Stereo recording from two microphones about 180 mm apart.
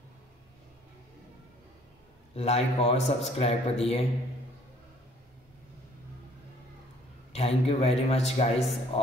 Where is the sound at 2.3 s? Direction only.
35° left (ahead or behind).